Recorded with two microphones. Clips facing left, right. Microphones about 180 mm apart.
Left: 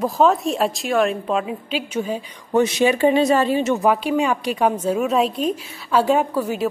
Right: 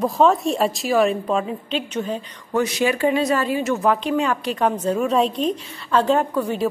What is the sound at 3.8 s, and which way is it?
A woman's voice, 10° left (ahead or behind).